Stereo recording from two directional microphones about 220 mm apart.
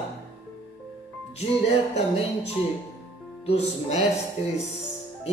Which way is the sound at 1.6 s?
30° left (ahead or behind).